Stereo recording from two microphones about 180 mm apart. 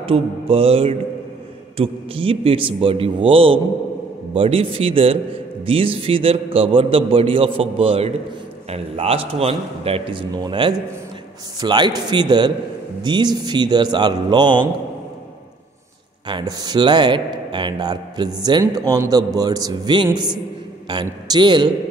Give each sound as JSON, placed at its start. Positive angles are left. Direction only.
{"t": 0.0, "sound": "a man's voice", "side_deg": -30}
{"t": 16.3, "sound": "a man's voice", "side_deg": -25}